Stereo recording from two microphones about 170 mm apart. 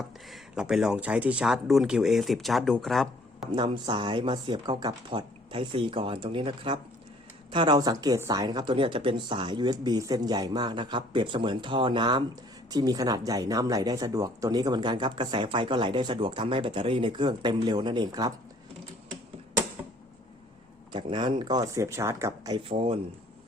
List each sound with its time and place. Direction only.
0.3 s speech: 5° right (ahead or behind)
3.5 s speech: 25° right (ahead or behind)
20.9 s speech: 30° right (ahead or behind)